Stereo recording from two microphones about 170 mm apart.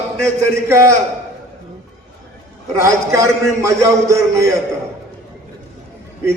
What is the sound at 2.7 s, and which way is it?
A man's voice, 15° right (ahead or behind).